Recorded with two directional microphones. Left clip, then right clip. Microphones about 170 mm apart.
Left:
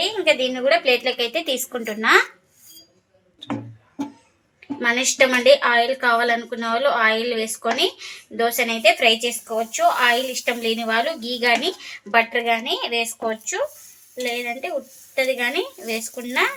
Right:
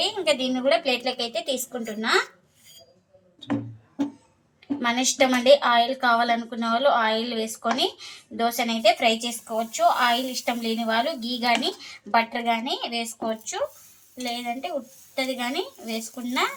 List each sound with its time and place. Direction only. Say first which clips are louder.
0.0 s speech: left 4 dB; 35° left (ahead or behind)
5.1 s speech: left 3 dB; 35° left (ahead or behind)